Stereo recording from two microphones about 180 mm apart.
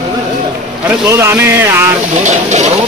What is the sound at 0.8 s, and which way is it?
Speech, 15° right (ahead or behind).